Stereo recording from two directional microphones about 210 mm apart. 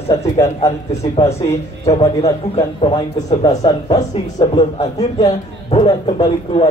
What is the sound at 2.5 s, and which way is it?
A man's voice, 25° left (ahead or behind).